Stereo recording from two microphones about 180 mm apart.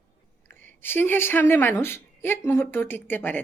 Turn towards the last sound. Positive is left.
turn(degrees=10)  # may be behind; listen again after turning